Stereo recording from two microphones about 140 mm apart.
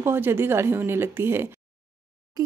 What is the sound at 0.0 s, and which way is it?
Speech, 15° right (ahead or behind).